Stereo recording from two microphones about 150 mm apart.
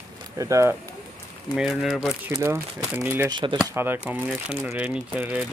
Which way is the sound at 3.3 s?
30° right (ahead or behind).